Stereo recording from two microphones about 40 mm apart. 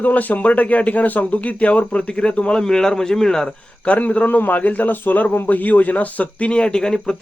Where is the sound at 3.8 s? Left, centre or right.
Left.